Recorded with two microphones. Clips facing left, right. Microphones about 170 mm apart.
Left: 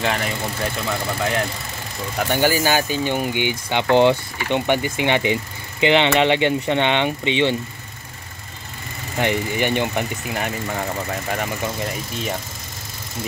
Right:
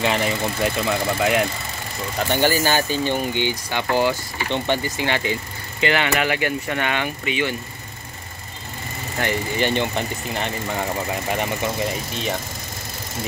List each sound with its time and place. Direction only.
0.0 s speech: 5° right (ahead or behind)
2.1 s speech: 10° left (ahead or behind); by 4.2 s 25° left (ahead or behind)
4.5 s speech: 15° left (ahead or behind)
9.2 s speech: 15° left (ahead or behind); by 11.1 s centre (ahead or behind)